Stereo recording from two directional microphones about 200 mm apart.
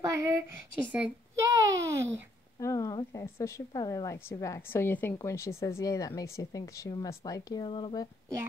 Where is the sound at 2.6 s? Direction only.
15° left (ahead or behind).